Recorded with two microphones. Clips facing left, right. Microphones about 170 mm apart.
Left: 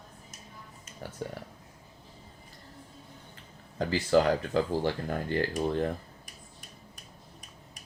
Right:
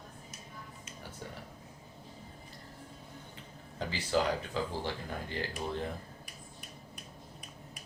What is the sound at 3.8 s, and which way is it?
Speech, 45° left (ahead or behind).